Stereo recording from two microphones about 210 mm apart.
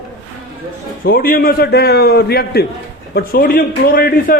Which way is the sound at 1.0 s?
45° left (ahead or behind).